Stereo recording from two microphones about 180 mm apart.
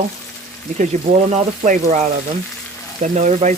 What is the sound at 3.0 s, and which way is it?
Speech, 40° right (ahead or behind).